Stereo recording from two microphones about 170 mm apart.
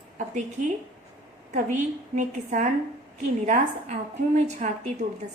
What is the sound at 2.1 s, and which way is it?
A woman's voice, 45° right (ahead or behind).